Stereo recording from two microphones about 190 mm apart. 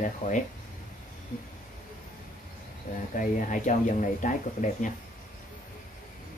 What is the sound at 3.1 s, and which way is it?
Speech, 45° left (ahead or behind).